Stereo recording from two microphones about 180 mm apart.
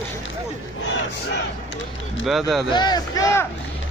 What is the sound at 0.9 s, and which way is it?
Crowd, 75° left (ahead or behind).